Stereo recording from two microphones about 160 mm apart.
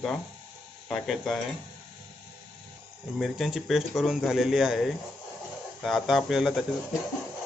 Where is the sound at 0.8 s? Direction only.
Centre (ahead or behind).